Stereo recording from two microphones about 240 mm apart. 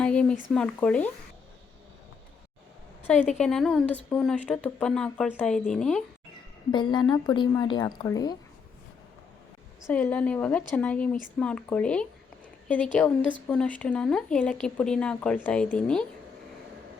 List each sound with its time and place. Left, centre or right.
0.0 s speech: centre
3.3 s speech: centre
6.7 s speech: centre
9.8 s speech: centre